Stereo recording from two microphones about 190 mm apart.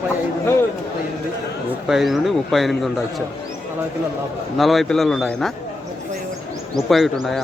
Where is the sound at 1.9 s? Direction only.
Centre (ahead or behind).